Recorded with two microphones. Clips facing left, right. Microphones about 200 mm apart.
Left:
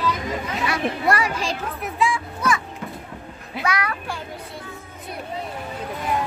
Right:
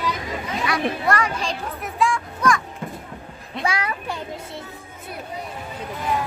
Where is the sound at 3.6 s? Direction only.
25° right (ahead or behind).